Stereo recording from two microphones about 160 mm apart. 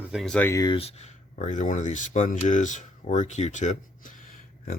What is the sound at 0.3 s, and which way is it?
Speech, 15° left (ahead or behind).